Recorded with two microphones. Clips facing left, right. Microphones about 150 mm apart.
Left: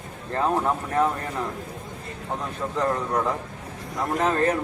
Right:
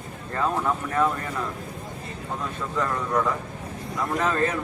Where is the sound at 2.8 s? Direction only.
30° left (ahead or behind).